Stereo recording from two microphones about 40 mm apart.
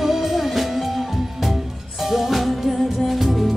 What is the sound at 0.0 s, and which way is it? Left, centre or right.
Music, centre.